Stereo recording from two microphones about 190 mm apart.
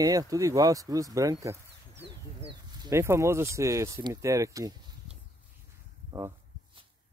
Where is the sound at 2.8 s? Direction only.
15° right (ahead or behind).